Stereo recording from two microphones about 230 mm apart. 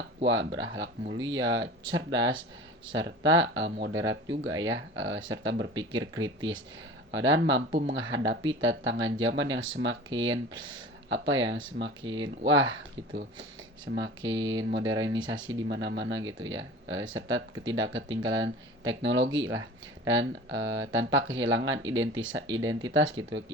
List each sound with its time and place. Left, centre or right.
0.3 s speech: right
7.1 s speech: right
7.7 s speech: right
7.9 s speech: right